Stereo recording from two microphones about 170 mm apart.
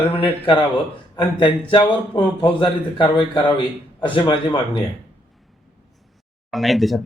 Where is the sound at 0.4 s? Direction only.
25° left (ahead or behind).